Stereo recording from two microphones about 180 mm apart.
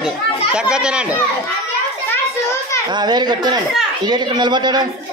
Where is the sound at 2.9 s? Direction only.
25° right (ahead or behind).